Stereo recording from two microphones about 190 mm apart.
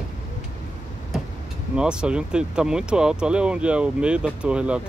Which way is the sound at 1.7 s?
5° right (ahead or behind).